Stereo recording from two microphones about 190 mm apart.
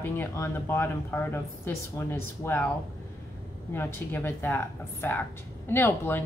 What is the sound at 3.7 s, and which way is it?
A woman's voice, 10° left (ahead or behind).